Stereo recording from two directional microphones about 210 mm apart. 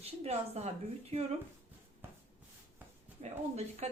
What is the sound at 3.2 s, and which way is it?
Speech, 30° right (ahead or behind).